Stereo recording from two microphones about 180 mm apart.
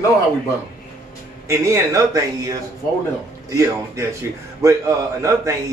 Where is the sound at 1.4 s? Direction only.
15° right (ahead or behind).